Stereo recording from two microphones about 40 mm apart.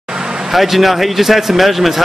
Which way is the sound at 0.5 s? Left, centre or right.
Centre.